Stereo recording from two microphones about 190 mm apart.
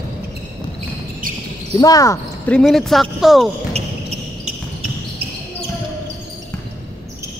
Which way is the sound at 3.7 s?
35° right (ahead or behind).